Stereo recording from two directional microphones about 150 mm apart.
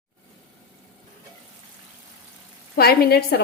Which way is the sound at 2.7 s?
90° left.